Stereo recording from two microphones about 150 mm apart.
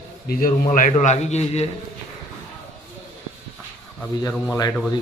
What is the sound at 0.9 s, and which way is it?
Speech, 50° left (ahead or behind).